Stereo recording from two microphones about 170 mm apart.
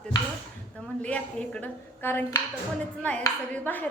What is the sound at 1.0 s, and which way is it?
Speech, 5° left (ahead or behind).